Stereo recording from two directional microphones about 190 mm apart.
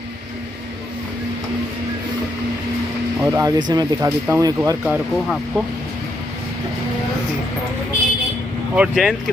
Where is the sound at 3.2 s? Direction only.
15° right (ahead or behind).